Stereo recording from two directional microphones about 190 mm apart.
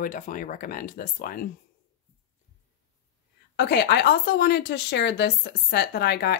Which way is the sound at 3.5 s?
60° left (ahead or behind).